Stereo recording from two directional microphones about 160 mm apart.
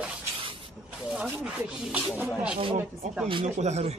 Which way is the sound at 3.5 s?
45° right (ahead or behind).